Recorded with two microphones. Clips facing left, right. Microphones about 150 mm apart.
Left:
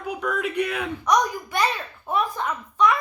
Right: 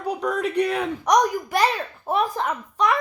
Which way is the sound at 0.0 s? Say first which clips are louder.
Right 3 dB; 35° right (ahead or behind).